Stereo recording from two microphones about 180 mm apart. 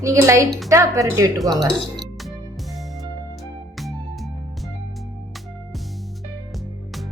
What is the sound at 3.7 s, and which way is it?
Music, centre (ahead or behind).